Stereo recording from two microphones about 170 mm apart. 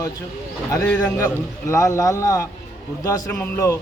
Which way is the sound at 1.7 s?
20° left (ahead or behind).